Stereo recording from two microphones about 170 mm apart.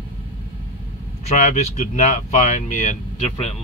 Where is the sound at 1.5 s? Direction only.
45° left (ahead or behind).